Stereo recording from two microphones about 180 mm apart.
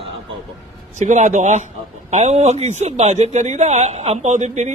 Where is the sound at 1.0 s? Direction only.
40° right (ahead or behind).